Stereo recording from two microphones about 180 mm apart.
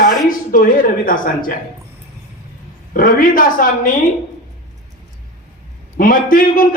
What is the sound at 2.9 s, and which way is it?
Speech, 50° left (ahead or behind).